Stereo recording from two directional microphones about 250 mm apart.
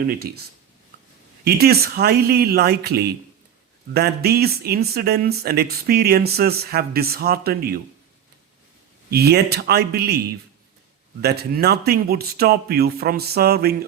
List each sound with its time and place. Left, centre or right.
0.0 s speech: right
1.5 s speech: right
9.0 s speech: right
11.2 s speech: right